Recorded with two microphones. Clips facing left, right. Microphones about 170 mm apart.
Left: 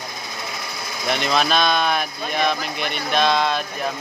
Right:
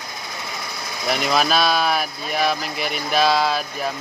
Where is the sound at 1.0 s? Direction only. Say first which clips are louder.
Right 1 dB; 5° right (ahead or behind).